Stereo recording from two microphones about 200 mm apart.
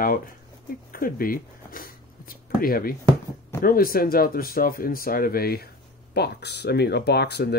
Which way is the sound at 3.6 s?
45° left (ahead or behind).